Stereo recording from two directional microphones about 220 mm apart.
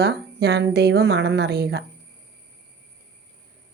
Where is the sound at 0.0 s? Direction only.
50° right (ahead or behind).